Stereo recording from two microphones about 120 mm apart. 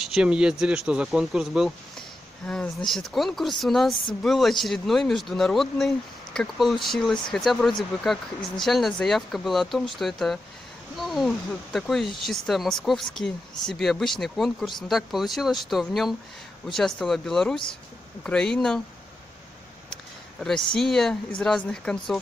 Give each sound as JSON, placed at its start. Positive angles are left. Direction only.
{"t": 0.0, "sound": "speech", "side_deg": -5}
{"t": 19.9, "sound": "speech", "side_deg": 5}